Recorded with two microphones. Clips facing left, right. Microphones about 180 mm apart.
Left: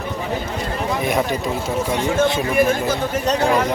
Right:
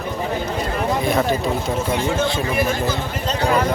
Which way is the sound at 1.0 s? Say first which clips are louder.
Left 1 dB; 15° left (ahead or behind).